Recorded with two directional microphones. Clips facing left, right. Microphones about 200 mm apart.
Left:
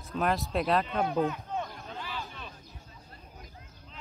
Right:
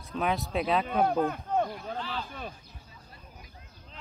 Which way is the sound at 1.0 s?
50° right (ahead or behind).